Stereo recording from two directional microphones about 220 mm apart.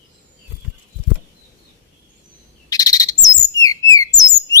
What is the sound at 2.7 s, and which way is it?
Bird, 15° left (ahead or behind).